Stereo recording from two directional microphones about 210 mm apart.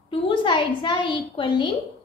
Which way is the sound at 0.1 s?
25° left (ahead or behind).